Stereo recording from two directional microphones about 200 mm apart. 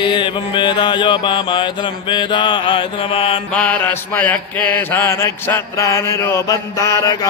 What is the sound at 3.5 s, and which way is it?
Mantra, 10° left (ahead or behind).